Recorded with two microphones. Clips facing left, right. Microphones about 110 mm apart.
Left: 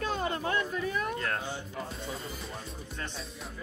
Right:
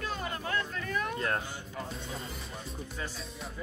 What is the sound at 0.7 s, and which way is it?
Speech, 10° left (ahead or behind).